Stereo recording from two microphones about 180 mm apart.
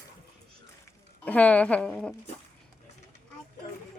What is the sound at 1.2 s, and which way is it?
Speech, 5° left (ahead or behind).